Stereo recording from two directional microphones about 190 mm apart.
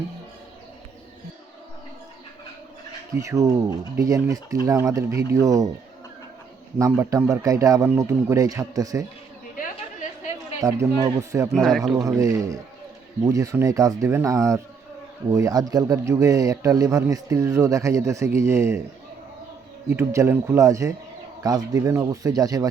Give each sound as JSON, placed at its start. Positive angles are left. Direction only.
{"t": 3.1, "sound": "a man's voice", "side_deg": -15}
{"t": 6.7, "sound": "a man's voice", "side_deg": -15}
{"t": 10.6, "sound": "a man's voice", "side_deg": -15}
{"t": 11.5, "sound": "a man's voice", "side_deg": 0}
{"t": 11.9, "sound": "a man's voice", "side_deg": -15}
{"t": 19.9, "sound": "a man's voice", "side_deg": -15}